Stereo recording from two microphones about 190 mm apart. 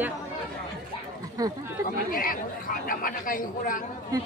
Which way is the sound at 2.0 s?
50° left (ahead or behind).